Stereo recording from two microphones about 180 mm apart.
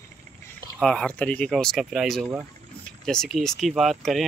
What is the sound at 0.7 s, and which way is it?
Speech, 5° left (ahead or behind).